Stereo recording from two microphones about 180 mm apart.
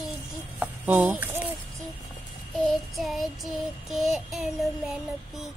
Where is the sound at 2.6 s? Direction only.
Centre (ahead or behind).